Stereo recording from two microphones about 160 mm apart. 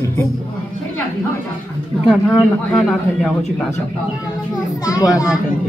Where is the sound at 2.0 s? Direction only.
Centre (ahead or behind).